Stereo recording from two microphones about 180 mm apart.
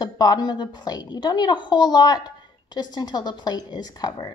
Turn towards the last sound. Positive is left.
turn(degrees=20)  # may be behind; listen again after turning